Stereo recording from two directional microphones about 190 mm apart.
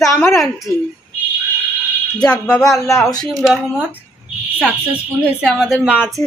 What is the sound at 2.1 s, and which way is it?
Speech, 5° left (ahead or behind).